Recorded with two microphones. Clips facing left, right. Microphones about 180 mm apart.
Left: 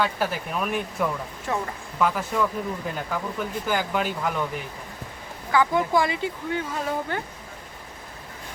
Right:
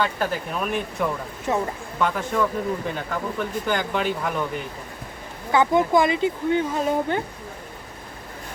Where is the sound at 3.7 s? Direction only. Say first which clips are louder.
Right 1 dB; 5° left (ahead or behind).